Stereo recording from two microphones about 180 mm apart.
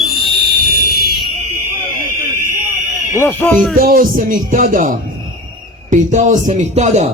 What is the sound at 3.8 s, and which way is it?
A man's voice, 50° right (ahead or behind).